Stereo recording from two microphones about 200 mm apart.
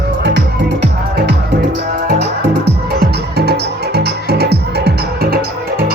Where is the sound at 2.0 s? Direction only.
55° right (ahead or behind).